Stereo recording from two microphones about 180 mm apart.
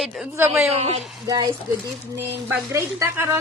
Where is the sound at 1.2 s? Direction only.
25° right (ahead or behind).